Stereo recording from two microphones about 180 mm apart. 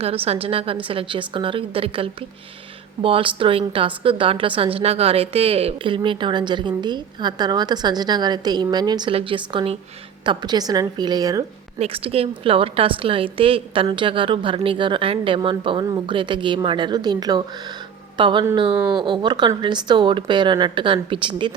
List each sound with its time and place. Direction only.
0.0 s a woman's voice: 35° right (ahead or behind)
11.8 s a woman's voice: 30° right (ahead or behind)